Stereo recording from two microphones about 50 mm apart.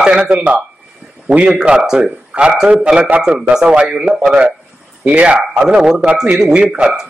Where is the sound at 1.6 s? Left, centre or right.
Centre.